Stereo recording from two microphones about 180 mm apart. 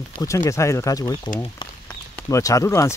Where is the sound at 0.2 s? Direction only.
15° left (ahead or behind).